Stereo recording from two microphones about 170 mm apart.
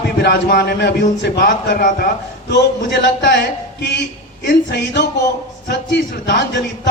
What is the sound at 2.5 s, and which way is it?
A man's voice, 75° left (ahead or behind).